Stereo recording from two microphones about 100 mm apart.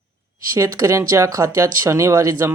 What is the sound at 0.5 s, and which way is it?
Speech, 35° right (ahead or behind).